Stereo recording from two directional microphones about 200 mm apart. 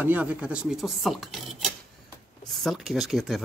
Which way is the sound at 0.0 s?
10° right (ahead or behind).